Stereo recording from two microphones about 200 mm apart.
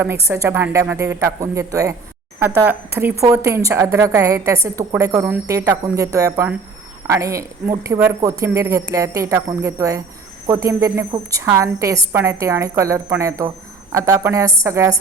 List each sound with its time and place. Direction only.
0.0 s a woman's voice: 15° right (ahead or behind)